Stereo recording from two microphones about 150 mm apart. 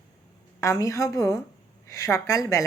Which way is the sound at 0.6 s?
20° left (ahead or behind).